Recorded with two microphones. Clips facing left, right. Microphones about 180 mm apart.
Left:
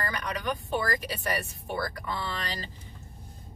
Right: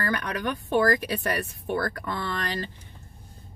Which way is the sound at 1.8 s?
60° right (ahead or behind).